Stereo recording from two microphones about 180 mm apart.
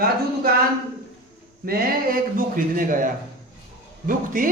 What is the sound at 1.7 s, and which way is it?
A man's voice, 50° right (ahead or behind).